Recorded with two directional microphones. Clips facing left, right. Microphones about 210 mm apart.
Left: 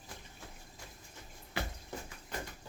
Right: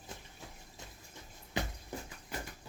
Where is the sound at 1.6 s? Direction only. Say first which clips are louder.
Right 2 dB; 20° right (ahead or behind).